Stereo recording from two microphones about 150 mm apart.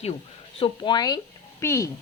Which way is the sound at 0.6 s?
30° left (ahead or behind).